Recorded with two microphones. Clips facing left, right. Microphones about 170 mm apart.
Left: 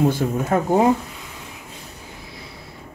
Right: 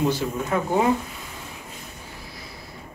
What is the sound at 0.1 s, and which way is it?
Speech, 45° left (ahead or behind).